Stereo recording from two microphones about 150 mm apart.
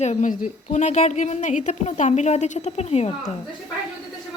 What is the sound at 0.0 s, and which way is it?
A woman's voice, 50° left (ahead or behind).